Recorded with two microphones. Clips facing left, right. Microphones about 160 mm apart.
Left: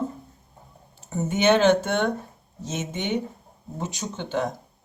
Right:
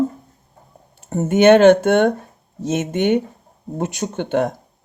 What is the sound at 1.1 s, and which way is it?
Speech, 55° right (ahead or behind).